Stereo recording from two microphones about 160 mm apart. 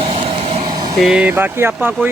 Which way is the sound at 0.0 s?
35° right (ahead or behind).